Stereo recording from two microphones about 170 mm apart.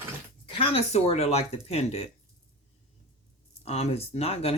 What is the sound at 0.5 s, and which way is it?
Speech, 35° left (ahead or behind).